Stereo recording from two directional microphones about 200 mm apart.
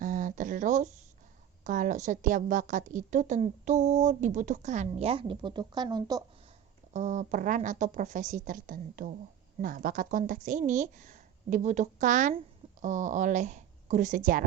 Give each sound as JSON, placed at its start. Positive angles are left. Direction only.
{"t": 0.0, "sound": "a sound", "side_deg": -40}
{"t": 1.6, "sound": "a woman's voice", "side_deg": -40}
{"t": 6.9, "sound": "a woman's voice", "side_deg": -35}